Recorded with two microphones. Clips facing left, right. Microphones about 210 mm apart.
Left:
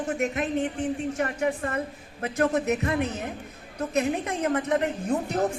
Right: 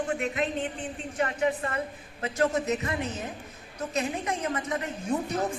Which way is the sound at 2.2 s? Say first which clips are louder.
Left 2 dB; 55° left (ahead or behind).